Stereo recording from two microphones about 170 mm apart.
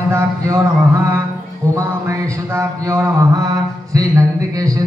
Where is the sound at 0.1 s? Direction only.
15° right (ahead or behind).